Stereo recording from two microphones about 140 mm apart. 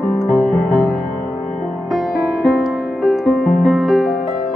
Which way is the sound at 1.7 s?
Centre (ahead or behind).